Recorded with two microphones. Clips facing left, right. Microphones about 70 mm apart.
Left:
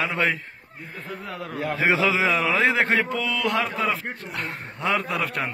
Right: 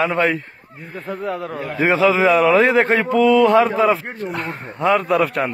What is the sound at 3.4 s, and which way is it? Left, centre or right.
Speech, centre.